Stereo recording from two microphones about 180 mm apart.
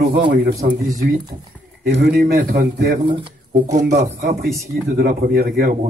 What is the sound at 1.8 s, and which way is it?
A man's voice, 65° right (ahead or behind).